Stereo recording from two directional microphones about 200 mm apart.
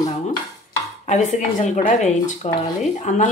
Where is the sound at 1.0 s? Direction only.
35° left (ahead or behind).